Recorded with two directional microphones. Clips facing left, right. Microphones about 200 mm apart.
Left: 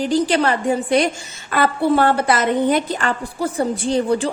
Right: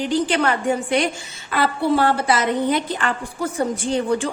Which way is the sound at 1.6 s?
55° left (ahead or behind).